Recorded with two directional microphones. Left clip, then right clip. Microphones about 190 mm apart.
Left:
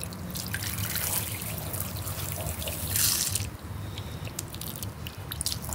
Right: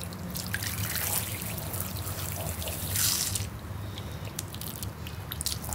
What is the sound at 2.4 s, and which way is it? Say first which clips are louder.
Drip: left 1 dB; 20° left (ahead or behind).